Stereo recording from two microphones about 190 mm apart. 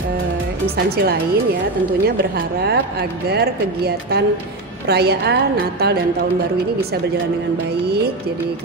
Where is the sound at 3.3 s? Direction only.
55° right (ahead or behind).